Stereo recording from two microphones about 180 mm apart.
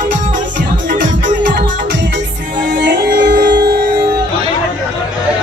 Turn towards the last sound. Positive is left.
turn(degrees=-60)  # may be behind; listen again after turning